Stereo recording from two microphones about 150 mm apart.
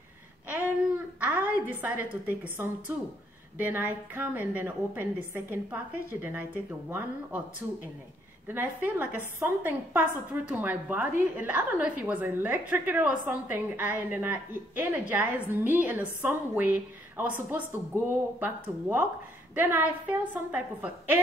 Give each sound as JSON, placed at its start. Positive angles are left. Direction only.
{"t": 1.2, "sound": "a sound", "side_deg": -10}
{"t": 2.6, "sound": "a woman's voice", "side_deg": -15}
{"t": 8.5, "sound": "a woman's voice", "side_deg": -15}